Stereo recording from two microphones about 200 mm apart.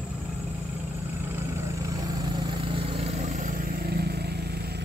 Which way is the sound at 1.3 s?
10° right (ahead or behind).